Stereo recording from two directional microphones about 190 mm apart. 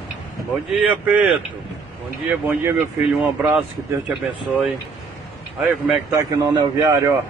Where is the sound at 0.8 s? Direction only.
5° right (ahead or behind).